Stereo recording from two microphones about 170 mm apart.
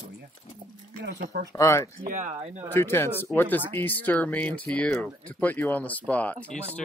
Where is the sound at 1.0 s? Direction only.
85° right.